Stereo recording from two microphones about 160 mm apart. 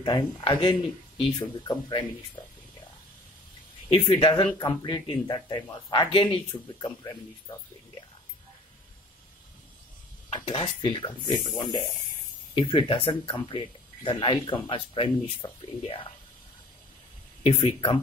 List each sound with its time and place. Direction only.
0.0 s speech: 30° left (ahead or behind)
3.9 s speech: 35° left (ahead or behind)
10.3 s speech: 40° left (ahead or behind)
11.2 s speech: 25° left (ahead or behind)
17.4 s speech: 40° left (ahead or behind)